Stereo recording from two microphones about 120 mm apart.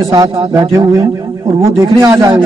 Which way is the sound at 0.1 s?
40° right (ahead or behind).